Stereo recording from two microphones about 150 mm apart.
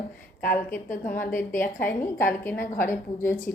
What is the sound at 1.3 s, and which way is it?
Speech, 65° left (ahead or behind).